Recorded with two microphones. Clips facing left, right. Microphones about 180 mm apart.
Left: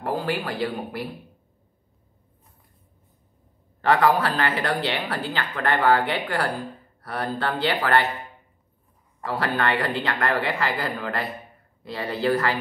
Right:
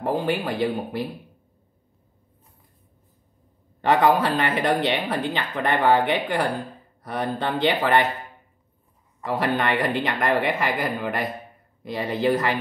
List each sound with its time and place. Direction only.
0.0 s speech: 20° right (ahead or behind)
3.8 s speech: 20° right (ahead or behind)
9.2 s speech: 20° right (ahead or behind)